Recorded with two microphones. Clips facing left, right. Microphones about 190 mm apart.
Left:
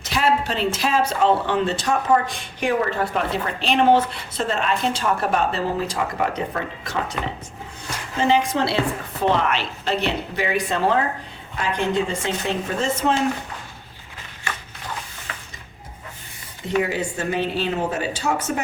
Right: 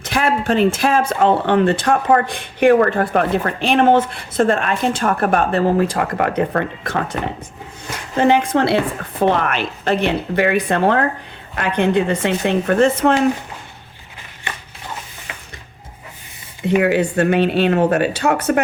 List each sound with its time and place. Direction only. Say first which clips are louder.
0.0 s speech: right 2 dB; 55° right (ahead or behind)
8.2 s speech: right 5 dB; 55° right (ahead or behind)
16.8 s speech: right 9 dB; 65° right (ahead or behind)